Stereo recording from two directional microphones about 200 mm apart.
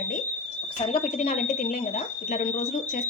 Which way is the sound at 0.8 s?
30° left (ahead or behind).